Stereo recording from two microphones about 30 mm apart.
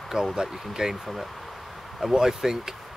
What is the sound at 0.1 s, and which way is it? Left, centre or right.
Speech, centre.